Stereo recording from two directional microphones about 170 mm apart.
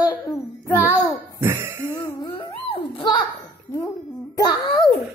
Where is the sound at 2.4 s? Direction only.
35° left (ahead or behind).